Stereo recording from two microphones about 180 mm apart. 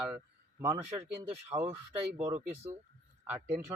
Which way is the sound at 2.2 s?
10° right (ahead or behind).